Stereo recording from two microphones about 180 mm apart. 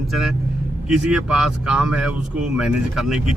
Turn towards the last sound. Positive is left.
turn(degrees=-5)  # may be behind; listen again after turning